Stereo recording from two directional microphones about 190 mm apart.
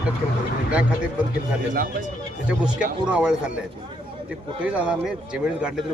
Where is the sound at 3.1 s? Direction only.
5° right (ahead or behind).